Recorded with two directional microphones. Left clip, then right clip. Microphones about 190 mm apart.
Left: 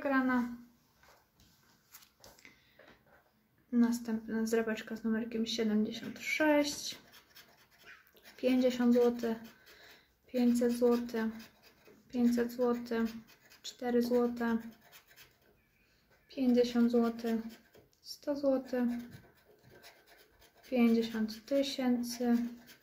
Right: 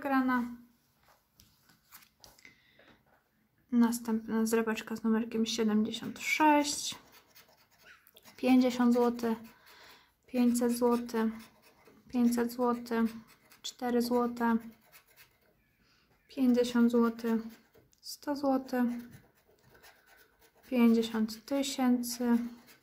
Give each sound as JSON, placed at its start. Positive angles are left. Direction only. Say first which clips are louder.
{"t": 0.0, "sound": "a sound", "louder": "right 1 dB", "side_deg": -20}
{"t": 3.7, "sound": "speech", "louder": "right 2 dB", "side_deg": -40}
{"t": 8.3, "sound": "speech", "louder": "right 2 dB", "side_deg": -40}
{"t": 16.3, "sound": "speech", "louder": "right 1 dB", "side_deg": -40}
{"t": 20.7, "sound": "speech", "louder": "right 2 dB", "side_deg": -40}